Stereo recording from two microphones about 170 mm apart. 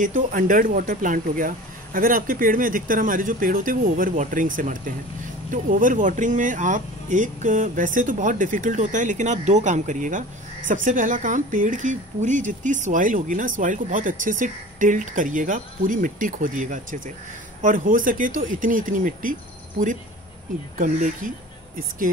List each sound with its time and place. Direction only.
0.0 s speech: 50° right (ahead or behind)
20.7 s speech: 50° right (ahead or behind)